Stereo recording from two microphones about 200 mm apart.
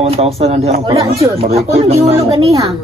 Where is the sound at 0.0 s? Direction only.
30° right (ahead or behind).